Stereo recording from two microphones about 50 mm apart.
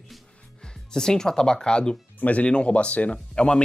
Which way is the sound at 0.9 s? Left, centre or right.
Centre.